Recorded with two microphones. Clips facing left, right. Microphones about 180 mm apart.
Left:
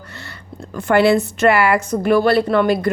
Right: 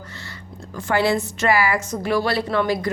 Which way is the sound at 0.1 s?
65° left (ahead or behind).